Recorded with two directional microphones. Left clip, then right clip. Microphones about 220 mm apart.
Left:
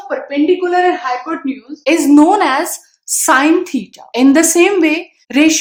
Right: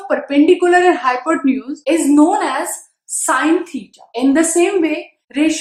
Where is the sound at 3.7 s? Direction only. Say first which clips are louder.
Left 7 dB; 50° left (ahead or behind).